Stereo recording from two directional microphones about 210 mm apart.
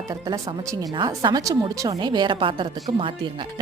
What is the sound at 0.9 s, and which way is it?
Speech, 20° right (ahead or behind).